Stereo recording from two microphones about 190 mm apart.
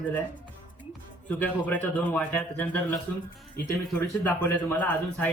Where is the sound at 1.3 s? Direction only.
10° left (ahead or behind).